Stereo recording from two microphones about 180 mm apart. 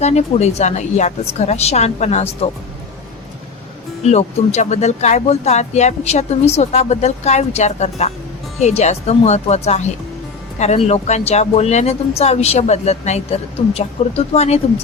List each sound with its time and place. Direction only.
0.0 s speech: 35° left (ahead or behind)
4.0 s speech: 40° left (ahead or behind)